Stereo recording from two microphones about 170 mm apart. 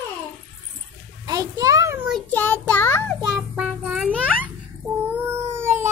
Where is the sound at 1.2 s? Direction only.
20° right (ahead or behind).